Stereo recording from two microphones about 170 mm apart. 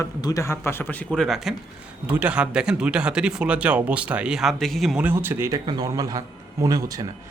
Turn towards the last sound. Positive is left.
turn(degrees=-20)  # may be behind; listen again after turning